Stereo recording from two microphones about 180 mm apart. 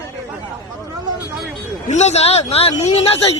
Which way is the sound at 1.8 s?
40° left (ahead or behind).